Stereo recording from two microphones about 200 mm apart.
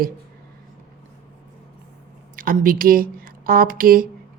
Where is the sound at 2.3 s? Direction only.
45° right (ahead or behind).